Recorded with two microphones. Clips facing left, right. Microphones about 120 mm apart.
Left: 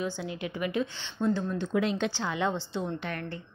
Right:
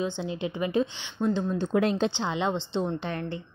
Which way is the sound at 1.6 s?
45° right (ahead or behind).